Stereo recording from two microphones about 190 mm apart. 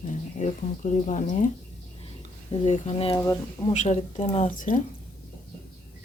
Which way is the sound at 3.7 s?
40° left (ahead or behind).